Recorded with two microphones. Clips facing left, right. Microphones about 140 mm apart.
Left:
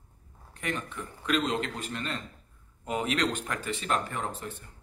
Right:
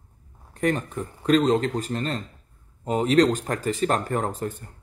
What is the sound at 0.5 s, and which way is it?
Speech, 40° right (ahead or behind).